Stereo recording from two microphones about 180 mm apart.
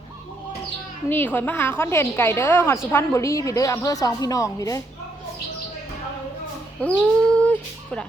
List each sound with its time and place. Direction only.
1.1 s a woman's voice: 10° left (ahead or behind)
6.8 s a woman's voice: 5° left (ahead or behind)